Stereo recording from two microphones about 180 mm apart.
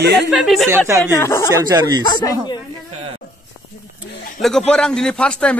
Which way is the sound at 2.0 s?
25° left (ahead or behind).